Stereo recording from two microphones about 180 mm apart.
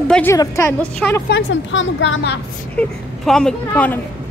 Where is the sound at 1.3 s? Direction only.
90° left.